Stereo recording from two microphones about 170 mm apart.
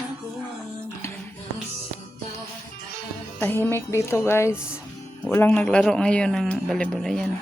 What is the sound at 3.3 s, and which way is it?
Speech, 10° left (ahead or behind).